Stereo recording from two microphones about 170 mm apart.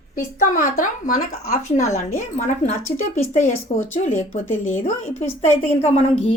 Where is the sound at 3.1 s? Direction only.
45° left (ahead or behind).